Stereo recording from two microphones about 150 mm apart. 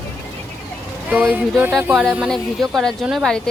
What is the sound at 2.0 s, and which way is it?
Speech, 5° left (ahead or behind).